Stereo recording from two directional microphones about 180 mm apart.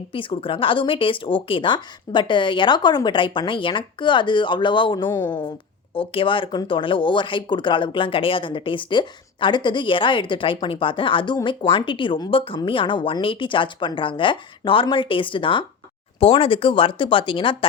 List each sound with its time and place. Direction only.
0.1 s speech: 30° left (ahead or behind)
5.0 s a woman's voice: 10° left (ahead or behind)
5.9 s speech: 30° left (ahead or behind)